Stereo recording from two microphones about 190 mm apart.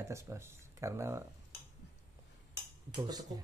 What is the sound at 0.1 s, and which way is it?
Speech, 15° right (ahead or behind).